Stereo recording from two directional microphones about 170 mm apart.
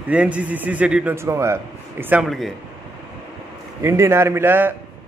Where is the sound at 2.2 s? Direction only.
Centre (ahead or behind).